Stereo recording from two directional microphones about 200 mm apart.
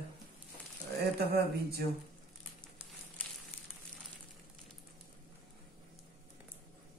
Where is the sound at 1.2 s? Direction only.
50° right (ahead or behind).